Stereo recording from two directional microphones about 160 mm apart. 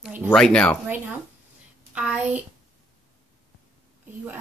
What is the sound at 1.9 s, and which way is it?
Speech, 5° right (ahead or behind).